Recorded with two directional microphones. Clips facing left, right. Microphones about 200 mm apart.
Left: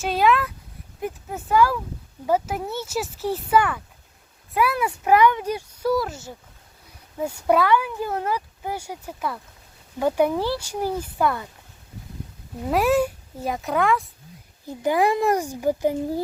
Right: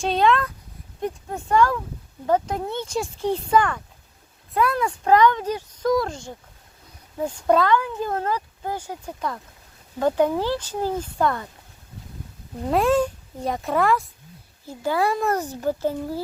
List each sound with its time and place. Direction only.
0.0 s speech: 5° left (ahead or behind)
10.4 s speech: 10° left (ahead or behind)
12.7 s speech: 5° left (ahead or behind)
14.7 s speech: 15° left (ahead or behind)